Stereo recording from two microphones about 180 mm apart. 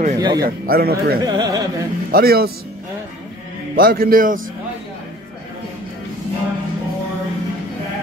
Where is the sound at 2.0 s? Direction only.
55° right (ahead or behind).